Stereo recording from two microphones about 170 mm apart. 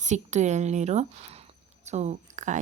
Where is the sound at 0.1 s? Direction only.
45° right (ahead or behind).